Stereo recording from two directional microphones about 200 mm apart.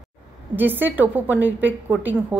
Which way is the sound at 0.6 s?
10° right (ahead or behind).